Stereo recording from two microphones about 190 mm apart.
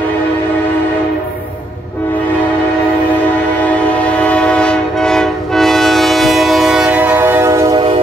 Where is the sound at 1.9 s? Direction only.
10° left (ahead or behind); by 7.8 s 15° right (ahead or behind).